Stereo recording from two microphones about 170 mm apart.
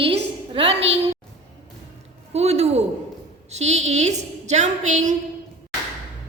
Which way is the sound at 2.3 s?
40° right (ahead or behind).